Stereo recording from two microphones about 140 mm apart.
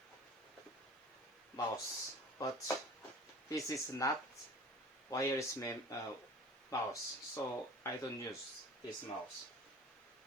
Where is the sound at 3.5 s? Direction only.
25° left (ahead or behind).